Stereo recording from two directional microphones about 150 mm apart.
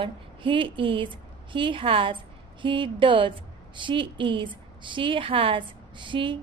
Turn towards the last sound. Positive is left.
turn(degrees=-35)  # may be behind; listen again after turning